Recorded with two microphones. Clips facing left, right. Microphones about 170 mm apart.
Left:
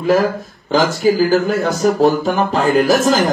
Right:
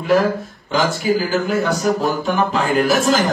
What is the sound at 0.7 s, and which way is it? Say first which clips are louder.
Speech: left 4 dB; 40° left (ahead or behind).